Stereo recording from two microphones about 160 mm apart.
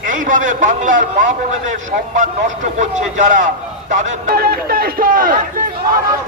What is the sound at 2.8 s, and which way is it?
A man's voice, 50° right (ahead or behind).